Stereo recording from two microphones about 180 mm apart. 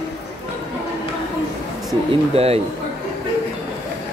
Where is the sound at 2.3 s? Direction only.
35° right (ahead or behind).